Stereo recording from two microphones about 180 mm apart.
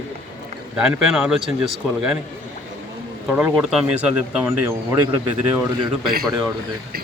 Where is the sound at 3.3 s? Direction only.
10° right (ahead or behind).